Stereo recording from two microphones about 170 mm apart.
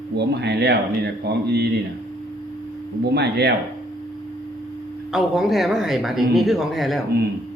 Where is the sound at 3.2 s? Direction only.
80° right.